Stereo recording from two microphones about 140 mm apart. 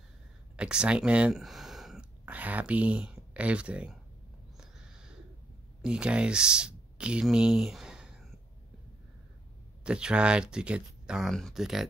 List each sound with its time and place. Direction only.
0.6 s speech: 5° right (ahead or behind)
5.8 s speech: 5° right (ahead or behind)
9.8 s speech: 5° right (ahead or behind)